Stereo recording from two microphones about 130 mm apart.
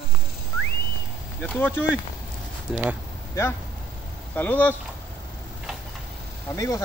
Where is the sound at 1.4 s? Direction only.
15° left (ahead or behind).